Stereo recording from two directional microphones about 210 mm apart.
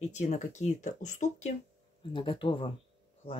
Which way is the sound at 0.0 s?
35° left (ahead or behind).